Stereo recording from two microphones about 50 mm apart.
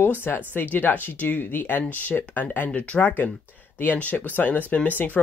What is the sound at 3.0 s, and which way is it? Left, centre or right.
Speech, left.